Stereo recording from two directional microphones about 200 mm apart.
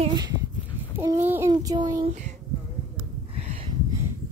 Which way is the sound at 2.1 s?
35° right (ahead or behind).